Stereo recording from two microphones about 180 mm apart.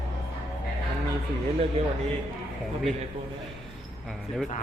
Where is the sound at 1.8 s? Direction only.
35° right (ahead or behind).